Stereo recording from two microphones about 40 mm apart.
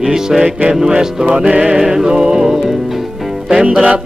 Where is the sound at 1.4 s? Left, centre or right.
Right.